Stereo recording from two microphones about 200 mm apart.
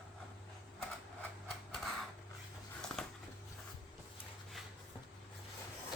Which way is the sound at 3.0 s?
5° left (ahead or behind).